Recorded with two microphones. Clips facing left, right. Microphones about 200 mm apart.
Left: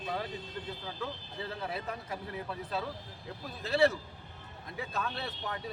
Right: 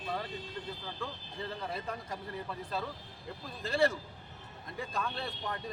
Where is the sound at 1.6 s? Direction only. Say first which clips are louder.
Left 1 dB; 5° left (ahead or behind).